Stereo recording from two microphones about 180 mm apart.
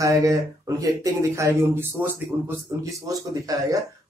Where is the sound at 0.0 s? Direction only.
20° right (ahead or behind).